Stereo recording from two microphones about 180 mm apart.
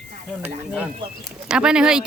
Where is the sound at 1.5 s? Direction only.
5° right (ahead or behind).